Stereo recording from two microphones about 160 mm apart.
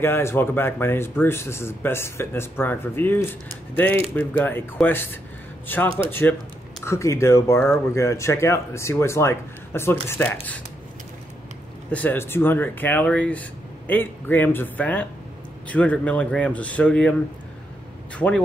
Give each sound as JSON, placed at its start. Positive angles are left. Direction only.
{"t": 0.0, "sound": "speech", "side_deg": 15}
{"t": 11.9, "sound": "speech", "side_deg": 10}
{"t": 18.1, "sound": "speech", "side_deg": 5}